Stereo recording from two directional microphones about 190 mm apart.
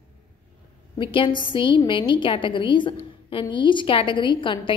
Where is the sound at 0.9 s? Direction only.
25° left (ahead or behind).